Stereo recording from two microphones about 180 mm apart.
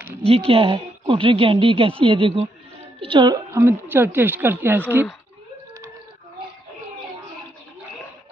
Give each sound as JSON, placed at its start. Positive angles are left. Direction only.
{"t": 0.3, "sound": "a woman's voice", "side_deg": -30}